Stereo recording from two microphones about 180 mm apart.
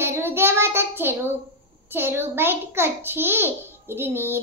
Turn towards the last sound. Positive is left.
turn(degrees=-10)  # may be behind; listen again after turning